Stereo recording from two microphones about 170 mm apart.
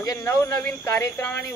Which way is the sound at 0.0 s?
20° left (ahead or behind).